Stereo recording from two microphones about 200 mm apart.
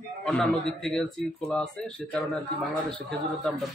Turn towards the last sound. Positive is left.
turn(degrees=0)  # may be behind; listen again after turning